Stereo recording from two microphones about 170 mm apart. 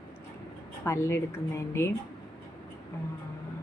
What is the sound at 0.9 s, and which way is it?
Speech, 15° left (ahead or behind).